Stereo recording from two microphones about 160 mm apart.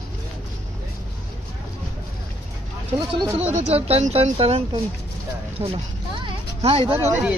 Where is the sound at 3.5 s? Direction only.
40° right (ahead or behind).